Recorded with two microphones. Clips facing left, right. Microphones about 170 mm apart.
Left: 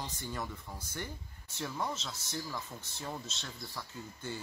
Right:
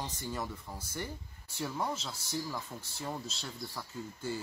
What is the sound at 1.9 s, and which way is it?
Speech, 35° right (ahead or behind).